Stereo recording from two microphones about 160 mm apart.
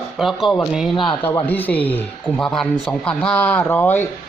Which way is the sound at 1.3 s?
15° left (ahead or behind).